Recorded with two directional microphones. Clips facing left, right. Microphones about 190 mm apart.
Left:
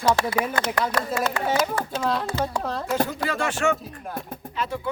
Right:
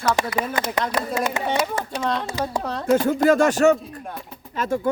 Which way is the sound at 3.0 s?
45° right (ahead or behind).